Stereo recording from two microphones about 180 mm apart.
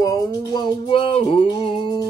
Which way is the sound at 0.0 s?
20° left (ahead or behind).